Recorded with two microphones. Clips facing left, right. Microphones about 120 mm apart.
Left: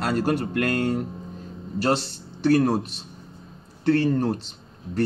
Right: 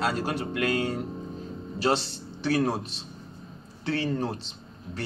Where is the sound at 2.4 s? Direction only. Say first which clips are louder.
Left 6 dB; 50° left (ahead or behind).